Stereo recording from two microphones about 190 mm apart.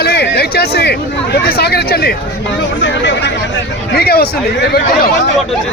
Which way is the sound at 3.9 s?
55° left (ahead or behind).